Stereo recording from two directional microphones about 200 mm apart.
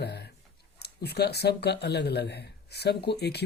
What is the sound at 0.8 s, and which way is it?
Speech, 55° left (ahead or behind).